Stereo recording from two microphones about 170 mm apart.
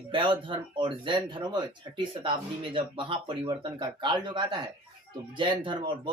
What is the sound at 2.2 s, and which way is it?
Speech, 30° right (ahead or behind).